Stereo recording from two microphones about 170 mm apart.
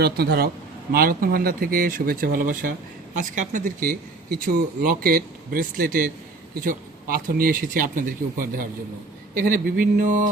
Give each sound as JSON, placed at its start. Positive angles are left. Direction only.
{"t": 0.0, "sound": "a man's voice", "side_deg": -70}